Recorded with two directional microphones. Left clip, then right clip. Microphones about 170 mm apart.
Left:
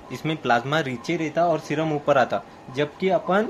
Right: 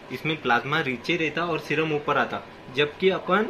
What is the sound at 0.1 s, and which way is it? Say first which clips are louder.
Speech: left 1 dB; 90° left.